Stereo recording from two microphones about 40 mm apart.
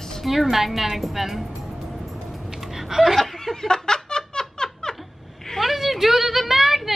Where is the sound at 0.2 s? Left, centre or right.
Centre.